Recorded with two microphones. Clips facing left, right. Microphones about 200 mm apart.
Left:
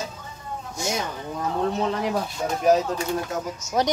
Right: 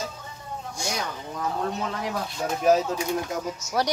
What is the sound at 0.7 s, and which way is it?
Speech, 20° left (ahead or behind).